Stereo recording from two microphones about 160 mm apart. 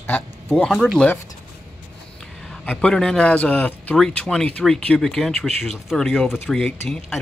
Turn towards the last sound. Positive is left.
turn(degrees=0)  # may be behind; listen again after turning